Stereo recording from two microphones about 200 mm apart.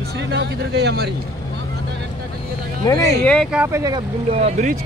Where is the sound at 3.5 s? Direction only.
15° right (ahead or behind).